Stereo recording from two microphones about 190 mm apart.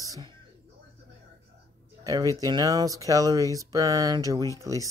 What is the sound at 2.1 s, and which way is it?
Speech, 20° right (ahead or behind).